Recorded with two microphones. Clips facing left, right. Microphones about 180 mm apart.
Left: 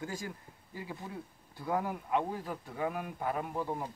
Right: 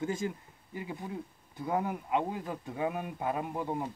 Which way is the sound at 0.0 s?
25° right (ahead or behind).